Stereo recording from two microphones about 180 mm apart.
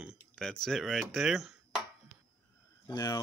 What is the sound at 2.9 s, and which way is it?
Speech, 20° left (ahead or behind).